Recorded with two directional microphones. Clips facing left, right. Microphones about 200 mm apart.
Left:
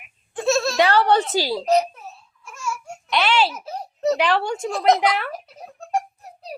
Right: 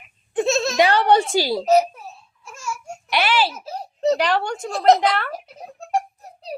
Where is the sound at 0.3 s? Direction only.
20° right (ahead or behind).